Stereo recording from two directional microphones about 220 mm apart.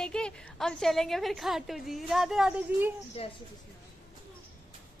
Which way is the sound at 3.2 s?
25° left (ahead or behind).